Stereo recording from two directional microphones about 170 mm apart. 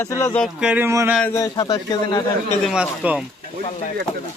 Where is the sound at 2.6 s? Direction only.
5° right (ahead or behind).